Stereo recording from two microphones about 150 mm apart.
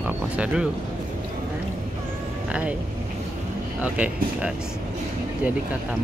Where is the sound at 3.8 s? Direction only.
10° right (ahead or behind).